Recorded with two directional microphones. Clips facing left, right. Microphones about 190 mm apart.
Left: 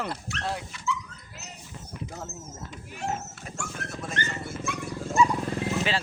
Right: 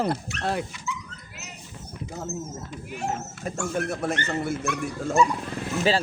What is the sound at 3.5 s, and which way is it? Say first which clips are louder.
Speech: right 10 dB; 60° right (ahead or behind).